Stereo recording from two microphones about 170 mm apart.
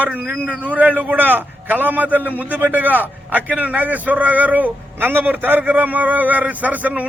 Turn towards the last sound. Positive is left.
turn(degrees=-10)  # may be behind; listen again after turning